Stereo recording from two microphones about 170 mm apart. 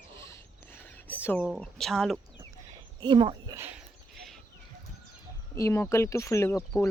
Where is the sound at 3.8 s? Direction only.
Centre (ahead or behind).